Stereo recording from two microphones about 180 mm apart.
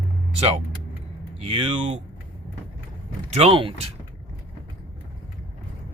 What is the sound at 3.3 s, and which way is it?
Speech, 35° right (ahead or behind).